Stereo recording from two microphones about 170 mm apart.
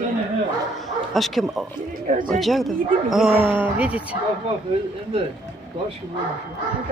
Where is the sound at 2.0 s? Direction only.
45° right (ahead or behind).